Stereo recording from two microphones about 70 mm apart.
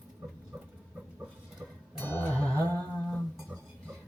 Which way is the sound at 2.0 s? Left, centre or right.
Left.